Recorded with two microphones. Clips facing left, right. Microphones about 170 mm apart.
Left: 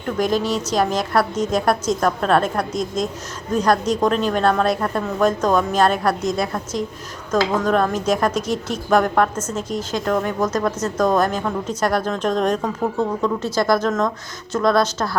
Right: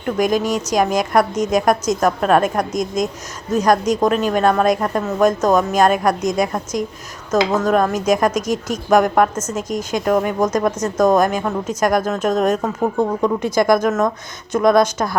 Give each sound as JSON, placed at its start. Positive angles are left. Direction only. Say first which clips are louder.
{"t": 0.0, "sound": "speech", "louder": "right 2 dB", "side_deg": -15}